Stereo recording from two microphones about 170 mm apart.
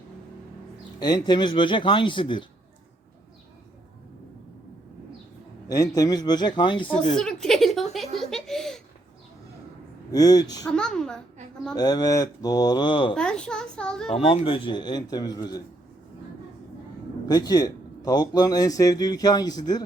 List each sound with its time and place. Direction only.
0.9 s a man's voice: 25° left (ahead or behind)
5.6 s a man's voice: 20° left (ahead or behind)
6.8 s a woman's voice: 5° left (ahead or behind)
8.3 s baby laughter: 5° left (ahead or behind)
10.1 s a man's voice: 20° left (ahead or behind)
10.7 s a child's voice: 5° left (ahead or behind)
11.7 s a man's voice: 25° left (ahead or behind)
13.1 s a child's voice: 5° left (ahead or behind)
14.1 s a man's voice: 35° left (ahead or behind)
17.2 s a man's voice: 20° left (ahead or behind)